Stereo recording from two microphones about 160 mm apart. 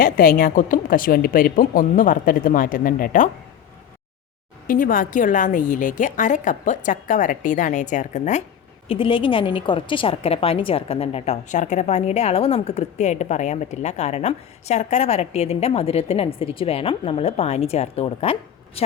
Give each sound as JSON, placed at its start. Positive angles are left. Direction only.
{"t": 0.0, "sound": "a woman's voice", "side_deg": 60}
{"t": 4.6, "sound": "a woman's voice", "side_deg": 60}
{"t": 8.9, "sound": "a woman's voice", "side_deg": 35}